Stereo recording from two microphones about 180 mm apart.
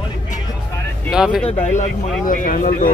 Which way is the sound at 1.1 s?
5° right (ahead or behind).